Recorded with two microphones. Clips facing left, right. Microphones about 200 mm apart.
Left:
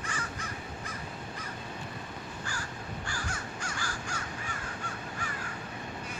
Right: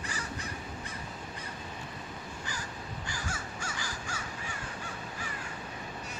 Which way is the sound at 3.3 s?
5° right (ahead or behind).